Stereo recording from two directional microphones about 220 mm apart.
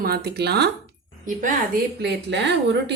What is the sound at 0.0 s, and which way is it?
Speech, 45° right (ahead or behind).